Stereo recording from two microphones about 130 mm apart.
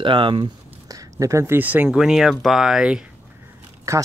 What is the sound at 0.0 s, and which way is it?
Speech, 40° right (ahead or behind).